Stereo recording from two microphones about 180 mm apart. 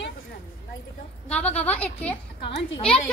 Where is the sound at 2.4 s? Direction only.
30° left (ahead or behind).